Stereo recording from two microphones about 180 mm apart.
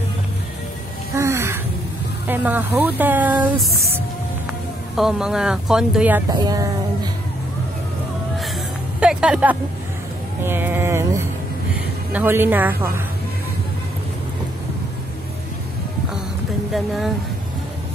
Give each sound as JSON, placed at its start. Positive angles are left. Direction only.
{"t": 1.1, "sound": "music", "side_deg": -15}
{"t": 2.2, "sound": "speech", "side_deg": -10}
{"t": 6.2, "sound": "speech", "side_deg": -25}
{"t": 9.0, "sound": "speech", "side_deg": -5}
{"t": 10.4, "sound": "music", "side_deg": -10}
{"t": 12.1, "sound": "speech", "side_deg": -10}
{"t": 16.7, "sound": "speech", "side_deg": 0}